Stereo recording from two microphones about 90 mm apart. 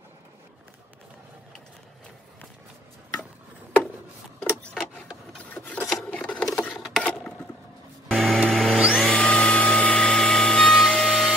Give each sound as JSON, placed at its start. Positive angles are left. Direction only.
{"t": 4.4, "sound": "rub", "side_deg": 15}
{"t": 5.4, "sound": "filing", "side_deg": 15}
{"t": 7.0, "sound": "a sound", "side_deg": 15}
{"t": 8.1, "sound": "vehicle", "side_deg": 0}
{"t": 8.7, "sound": "a sound", "side_deg": -10}
{"t": 9.0, "sound": "music", "side_deg": 10}